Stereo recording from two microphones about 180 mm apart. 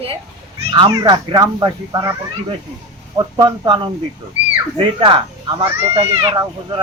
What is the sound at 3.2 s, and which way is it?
A woman's voice, 25° right (ahead or behind).